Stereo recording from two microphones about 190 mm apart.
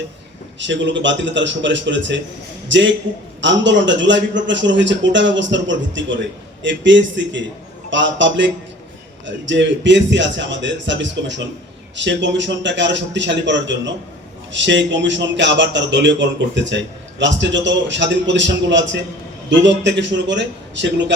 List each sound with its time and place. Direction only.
0.6 s a man's voice: 70° right (ahead or behind)